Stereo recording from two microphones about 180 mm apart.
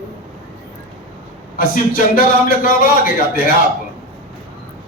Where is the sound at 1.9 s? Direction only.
50° left (ahead or behind).